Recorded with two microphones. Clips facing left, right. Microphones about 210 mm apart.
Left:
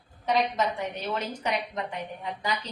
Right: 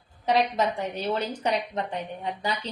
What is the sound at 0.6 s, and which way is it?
A woman's voice, 30° right (ahead or behind).